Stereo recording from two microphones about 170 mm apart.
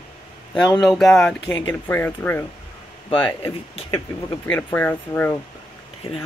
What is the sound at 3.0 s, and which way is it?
Speech, 30° left (ahead or behind).